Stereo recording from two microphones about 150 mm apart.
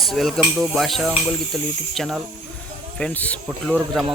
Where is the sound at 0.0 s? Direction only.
Centre (ahead or behind).